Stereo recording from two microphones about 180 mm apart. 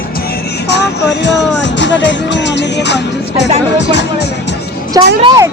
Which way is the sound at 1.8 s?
80° left.